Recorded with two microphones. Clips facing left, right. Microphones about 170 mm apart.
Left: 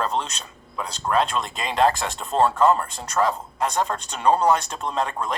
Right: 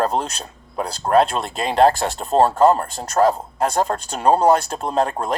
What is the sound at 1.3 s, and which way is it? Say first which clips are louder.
Speech: right 4 dB; 35° right (ahead or behind).